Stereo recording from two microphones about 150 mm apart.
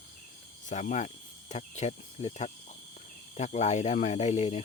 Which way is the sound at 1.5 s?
50° left (ahead or behind).